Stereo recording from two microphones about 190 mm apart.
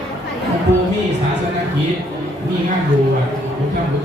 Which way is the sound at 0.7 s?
65° right (ahead or behind).